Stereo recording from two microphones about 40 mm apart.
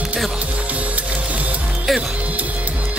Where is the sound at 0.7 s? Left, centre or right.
Right.